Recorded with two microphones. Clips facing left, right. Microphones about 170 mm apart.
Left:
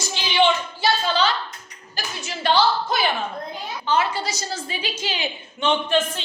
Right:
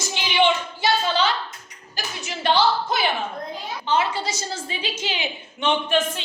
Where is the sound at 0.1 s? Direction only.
15° right (ahead or behind).